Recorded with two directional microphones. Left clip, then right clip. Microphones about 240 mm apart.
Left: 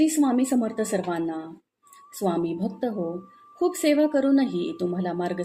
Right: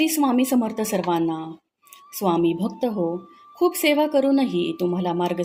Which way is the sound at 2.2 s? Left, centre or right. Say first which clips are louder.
Right 5 dB; right.